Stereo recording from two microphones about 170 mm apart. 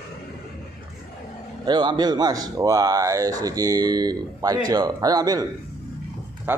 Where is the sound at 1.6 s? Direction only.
25° right (ahead or behind).